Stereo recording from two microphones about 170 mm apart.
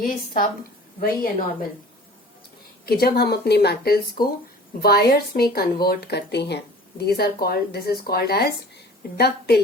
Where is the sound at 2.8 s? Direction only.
65° left (ahead or behind).